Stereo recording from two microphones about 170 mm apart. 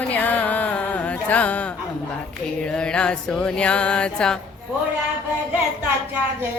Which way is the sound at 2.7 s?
5° left (ahead or behind).